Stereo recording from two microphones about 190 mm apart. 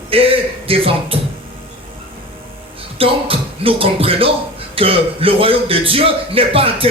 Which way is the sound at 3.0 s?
30° right (ahead or behind).